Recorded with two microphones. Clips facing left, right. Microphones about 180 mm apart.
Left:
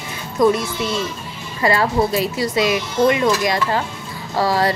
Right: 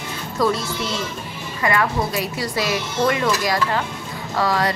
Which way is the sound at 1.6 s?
30° left (ahead or behind).